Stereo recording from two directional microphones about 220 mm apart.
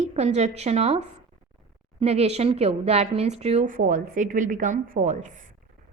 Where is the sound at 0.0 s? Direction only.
30° right (ahead or behind).